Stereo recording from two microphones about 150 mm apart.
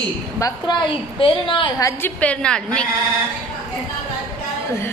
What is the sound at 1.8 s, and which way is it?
Speech, 10° left (ahead or behind).